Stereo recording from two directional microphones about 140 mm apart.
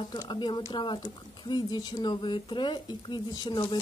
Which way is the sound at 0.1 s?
30° left (ahead or behind).